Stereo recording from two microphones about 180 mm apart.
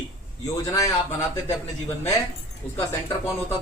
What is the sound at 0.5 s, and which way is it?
Speech, 15° left (ahead or behind).